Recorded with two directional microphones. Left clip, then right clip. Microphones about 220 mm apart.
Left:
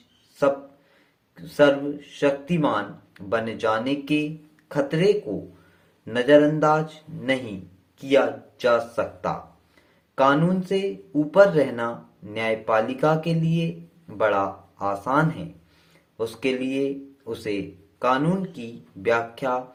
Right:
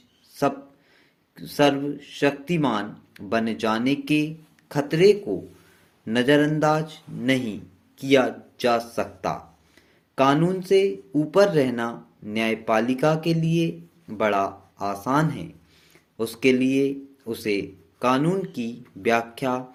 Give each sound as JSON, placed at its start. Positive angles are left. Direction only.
{"t": 1.4, "sound": "speech", "side_deg": -35}